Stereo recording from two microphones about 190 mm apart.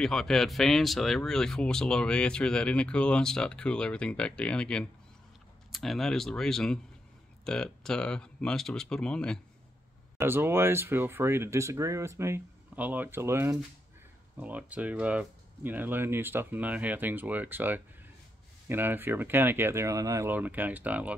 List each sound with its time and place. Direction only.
0.0 s speech: centre (ahead or behind)
10.1 s speech: 10° right (ahead or behind)